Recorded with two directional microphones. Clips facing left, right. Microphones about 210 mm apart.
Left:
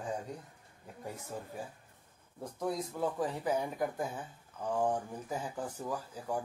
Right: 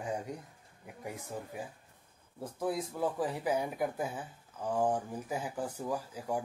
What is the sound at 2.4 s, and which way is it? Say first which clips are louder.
Speech: right 1 dB; 5° right (ahead or behind).